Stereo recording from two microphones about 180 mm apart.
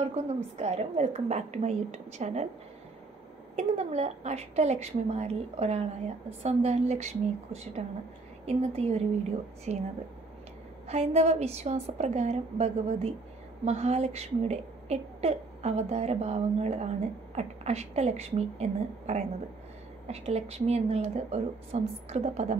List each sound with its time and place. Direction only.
0.0 s a woman's voice: 35° right (ahead or behind)
3.5 s a woman's voice: 35° right (ahead or behind)
10.9 s a woman's voice: 35° right (ahead or behind)